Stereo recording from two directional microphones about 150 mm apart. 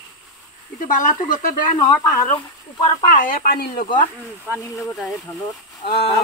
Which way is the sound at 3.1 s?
65° left (ahead or behind).